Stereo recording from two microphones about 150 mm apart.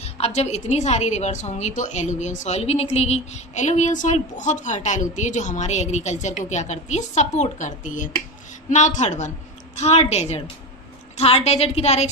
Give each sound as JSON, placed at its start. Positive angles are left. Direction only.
{"t": 0.0, "sound": "a woman's voice", "side_deg": 45}